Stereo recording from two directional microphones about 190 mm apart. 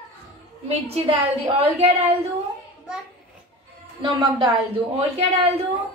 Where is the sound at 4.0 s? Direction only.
25° right (ahead or behind).